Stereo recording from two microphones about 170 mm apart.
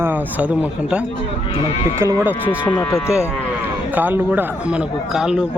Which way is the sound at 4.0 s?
10° right (ahead or behind).